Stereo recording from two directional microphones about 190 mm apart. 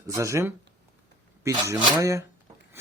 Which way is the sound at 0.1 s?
15° right (ahead or behind).